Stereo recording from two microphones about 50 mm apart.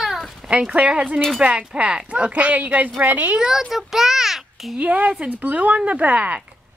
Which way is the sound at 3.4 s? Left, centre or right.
Centre.